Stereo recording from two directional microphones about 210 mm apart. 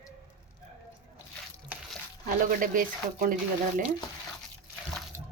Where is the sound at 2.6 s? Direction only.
40° right (ahead or behind).